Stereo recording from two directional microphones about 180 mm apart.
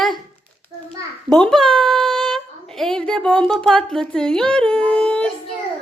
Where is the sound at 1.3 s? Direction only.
5° left (ahead or behind).